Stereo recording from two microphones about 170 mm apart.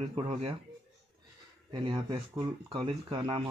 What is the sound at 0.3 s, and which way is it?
Speech, 40° right (ahead or behind).